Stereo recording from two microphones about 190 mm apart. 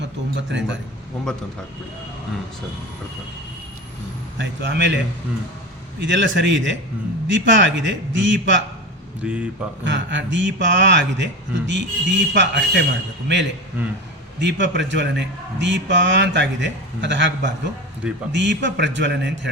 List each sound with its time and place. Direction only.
0.0 s speech: 70° right (ahead or behind)
1.3 s speech: 5° left (ahead or behind)
4.4 s a man's voice: 65° right (ahead or behind)
6.0 s a man's voice: 75° right (ahead or behind)
9.2 s speech: 5° right (ahead or behind)
9.8 s a man's voice: 70° right (ahead or behind)
13.8 s a man's voice: 10° right (ahead or behind)
14.3 s a man's voice: 70° right (ahead or behind)